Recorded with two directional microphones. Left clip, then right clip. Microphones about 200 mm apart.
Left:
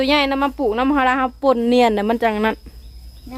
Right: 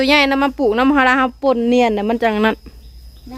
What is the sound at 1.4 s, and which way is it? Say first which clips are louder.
Speech: even; 5° right (ahead or behind).